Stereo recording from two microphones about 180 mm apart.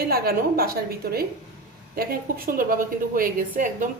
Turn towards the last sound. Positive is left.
turn(degrees=-45)  # may be behind; listen again after turning